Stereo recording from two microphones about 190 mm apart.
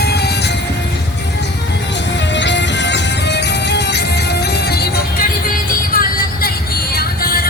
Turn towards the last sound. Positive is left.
turn(degrees=50)  # may be behind; listen again after turning